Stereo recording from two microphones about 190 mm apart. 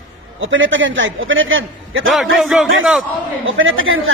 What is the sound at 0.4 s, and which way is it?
A woman's voice, 90° right.